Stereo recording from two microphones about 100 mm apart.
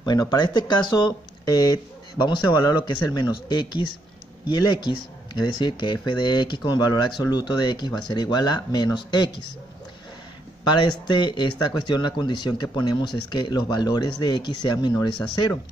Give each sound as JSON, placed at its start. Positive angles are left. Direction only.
{"t": 0.0, "sound": "speech", "side_deg": 40}
{"t": 2.1, "sound": "speech", "side_deg": 50}
{"t": 10.6, "sound": "speech", "side_deg": 50}